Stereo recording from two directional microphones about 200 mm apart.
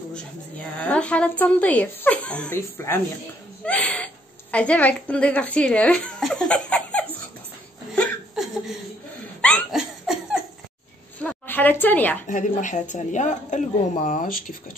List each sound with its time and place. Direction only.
0.1 s a sound: 5° left (ahead or behind)
3.6 s a woman's voice: 5° left (ahead or behind)
7.9 s a sound: centre (ahead or behind)
9.4 s laughter: centre (ahead or behind)
11.1 s a woman's voice: 10° left (ahead or behind)
12.3 s speech: 40° left (ahead or behind)